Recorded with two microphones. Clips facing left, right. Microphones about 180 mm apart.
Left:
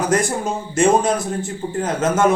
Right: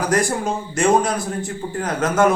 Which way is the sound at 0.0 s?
25° left (ahead or behind).